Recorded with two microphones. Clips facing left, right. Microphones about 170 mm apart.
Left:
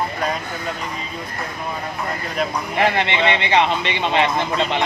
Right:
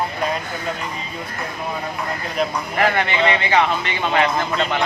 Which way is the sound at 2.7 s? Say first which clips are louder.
Even; 25° left (ahead or behind).